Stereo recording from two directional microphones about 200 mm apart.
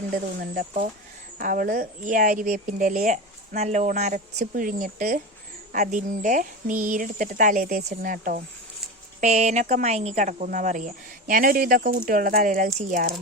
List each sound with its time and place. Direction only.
0.1 s speech: 45° right (ahead or behind)